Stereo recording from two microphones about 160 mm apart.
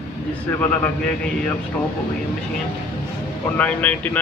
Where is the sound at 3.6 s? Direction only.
10° left (ahead or behind).